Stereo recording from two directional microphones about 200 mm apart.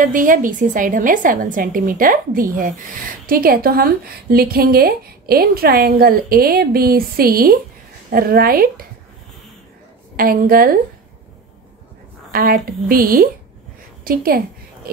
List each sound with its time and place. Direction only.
0.0 s a woman's voice: 40° right (ahead or behind)
10.1 s a woman's voice: 45° right (ahead or behind)
12.3 s a woman's voice: 50° right (ahead or behind)